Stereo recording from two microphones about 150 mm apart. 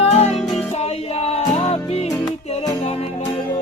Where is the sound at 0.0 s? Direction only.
45° left (ahead or behind).